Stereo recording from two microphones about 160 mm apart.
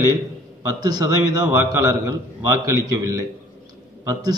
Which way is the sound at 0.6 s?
25° right (ahead or behind).